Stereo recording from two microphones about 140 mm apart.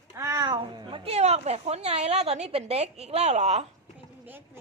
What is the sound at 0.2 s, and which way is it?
A woman's voice, 25° right (ahead or behind).